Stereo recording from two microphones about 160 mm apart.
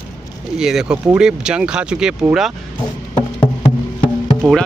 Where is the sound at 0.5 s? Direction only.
5° right (ahead or behind).